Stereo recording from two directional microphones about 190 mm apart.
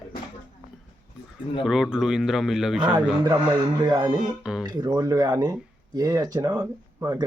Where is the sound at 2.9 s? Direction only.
20° right (ahead or behind).